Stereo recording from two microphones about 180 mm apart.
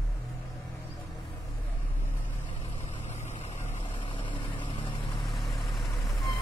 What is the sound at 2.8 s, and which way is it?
Vehicle, 35° left (ahead or behind).